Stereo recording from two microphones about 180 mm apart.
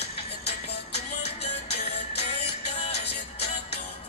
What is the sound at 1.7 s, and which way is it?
Music, 35° left (ahead or behind).